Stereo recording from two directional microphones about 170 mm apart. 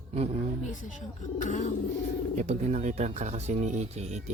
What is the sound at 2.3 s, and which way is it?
Speech, 40° right (ahead or behind).